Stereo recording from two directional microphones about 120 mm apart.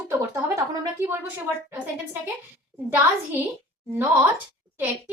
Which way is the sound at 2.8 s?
15° right (ahead or behind).